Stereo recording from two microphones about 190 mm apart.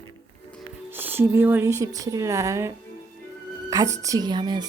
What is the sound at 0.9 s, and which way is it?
A woman's voice, 10° right (ahead or behind).